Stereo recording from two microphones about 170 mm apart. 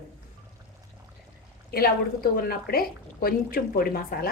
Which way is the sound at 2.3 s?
60° left (ahead or behind).